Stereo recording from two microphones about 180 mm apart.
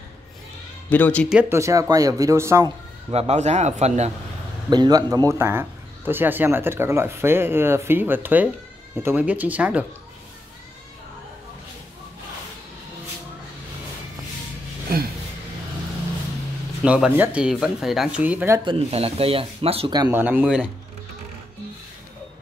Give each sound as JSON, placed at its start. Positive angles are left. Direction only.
{"t": 0.8, "sound": "speech", "side_deg": 10}
{"t": 1.3, "sound": "a man's voice", "side_deg": -10}
{"t": 3.1, "sound": "speech", "side_deg": -35}
{"t": 4.6, "sound": "a man's voice", "side_deg": -25}
{"t": 16.8, "sound": "a man's voice", "side_deg": -5}
{"t": 18.6, "sound": "speech", "side_deg": -30}
{"t": 20.1, "sound": "a man's voice", "side_deg": -10}